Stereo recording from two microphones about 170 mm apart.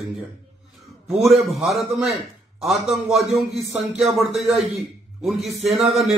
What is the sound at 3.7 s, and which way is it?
Speech, 5° right (ahead or behind).